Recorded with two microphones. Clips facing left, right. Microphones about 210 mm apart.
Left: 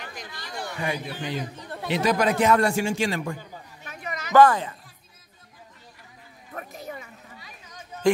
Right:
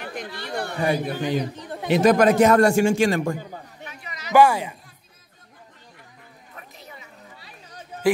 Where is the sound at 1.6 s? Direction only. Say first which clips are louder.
Right 3 dB; 20° right (ahead or behind).